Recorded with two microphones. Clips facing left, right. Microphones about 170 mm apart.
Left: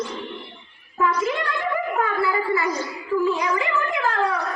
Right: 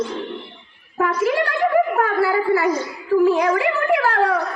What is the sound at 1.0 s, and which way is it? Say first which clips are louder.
A woman's voice: right 4 dB; 65° right (ahead or behind).